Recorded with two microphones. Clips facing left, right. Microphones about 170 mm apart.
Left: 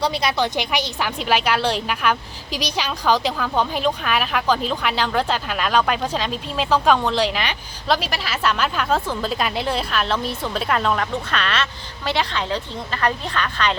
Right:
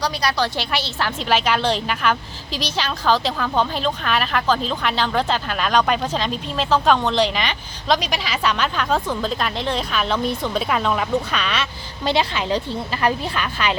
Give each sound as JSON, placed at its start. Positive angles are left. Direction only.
{"t": 0.0, "sound": "a woman's voice", "side_deg": 25}
{"t": 12.0, "sound": "a woman's voice", "side_deg": -15}